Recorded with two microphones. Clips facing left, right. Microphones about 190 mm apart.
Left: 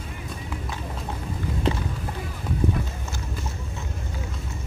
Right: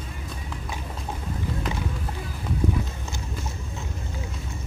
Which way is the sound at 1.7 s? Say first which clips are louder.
Left 9 dB; 30° left (ahead or behind).